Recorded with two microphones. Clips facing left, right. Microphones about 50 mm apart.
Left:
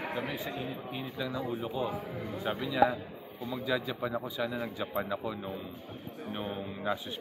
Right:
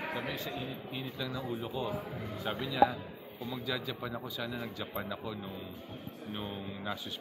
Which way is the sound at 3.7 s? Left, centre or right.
Centre.